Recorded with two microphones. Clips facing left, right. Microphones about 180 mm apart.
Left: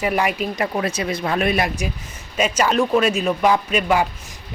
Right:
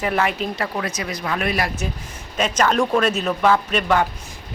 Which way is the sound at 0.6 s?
25° left (ahead or behind).